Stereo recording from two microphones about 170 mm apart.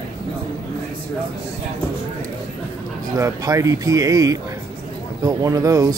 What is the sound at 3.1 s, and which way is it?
Speech, 20° right (ahead or behind).